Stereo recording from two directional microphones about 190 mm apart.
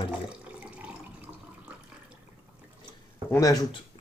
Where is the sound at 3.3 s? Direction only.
20° left (ahead or behind).